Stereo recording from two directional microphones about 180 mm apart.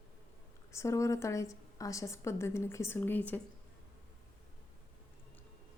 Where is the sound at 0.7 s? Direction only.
15° left (ahead or behind).